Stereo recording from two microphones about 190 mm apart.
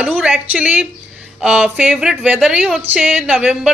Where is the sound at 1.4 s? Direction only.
5° right (ahead or behind).